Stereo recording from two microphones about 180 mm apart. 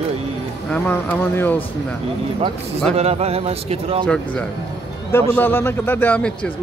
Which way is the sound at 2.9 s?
35° right (ahead or behind).